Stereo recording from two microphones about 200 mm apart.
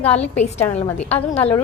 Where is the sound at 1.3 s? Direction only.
30° left (ahead or behind).